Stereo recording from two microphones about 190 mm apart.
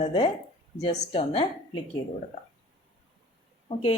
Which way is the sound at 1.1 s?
30° left (ahead or behind).